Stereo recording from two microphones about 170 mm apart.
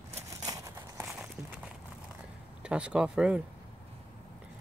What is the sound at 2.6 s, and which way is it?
Speech, 5° right (ahead or behind).